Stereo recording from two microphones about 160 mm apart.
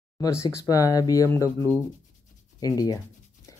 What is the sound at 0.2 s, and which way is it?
Speech, 20° left (ahead or behind).